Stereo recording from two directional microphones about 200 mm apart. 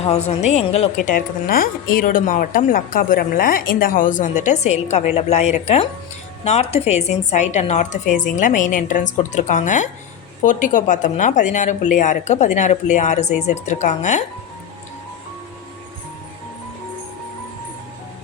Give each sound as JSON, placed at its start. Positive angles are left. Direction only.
{"t": 0.0, "sound": "a woman's voice", "side_deg": 35}